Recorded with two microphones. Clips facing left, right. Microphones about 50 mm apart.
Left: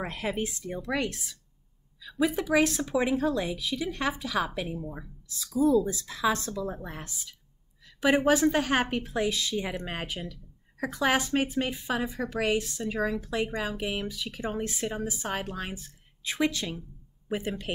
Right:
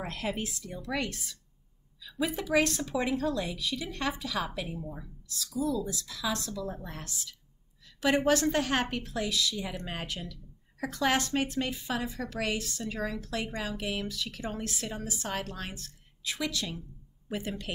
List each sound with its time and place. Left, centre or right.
0.0 s a woman's voice: centre
1.1 s a woman's voice: centre
5.4 s a woman's voice: left
9.7 s a woman's voice: centre
16.3 s a woman's voice: left
17.3 s a woman's voice: centre